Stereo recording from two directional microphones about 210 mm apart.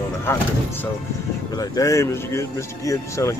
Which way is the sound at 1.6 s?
15° left (ahead or behind).